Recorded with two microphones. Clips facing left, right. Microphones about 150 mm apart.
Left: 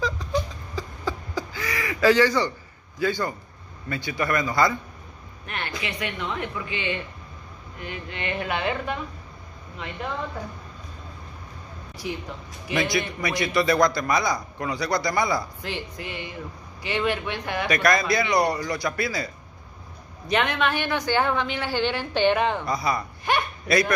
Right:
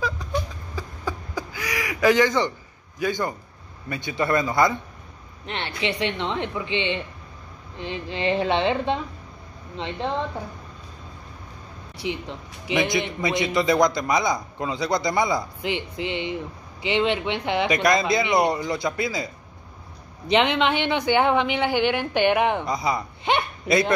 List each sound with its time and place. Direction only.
0.2 s a sound: 10° right (ahead or behind)
3.0 s a man's voice: 20° right (ahead or behind)
5.8 s a man's voice: 25° right (ahead or behind)
12.0 s a man's voice: 20° right (ahead or behind)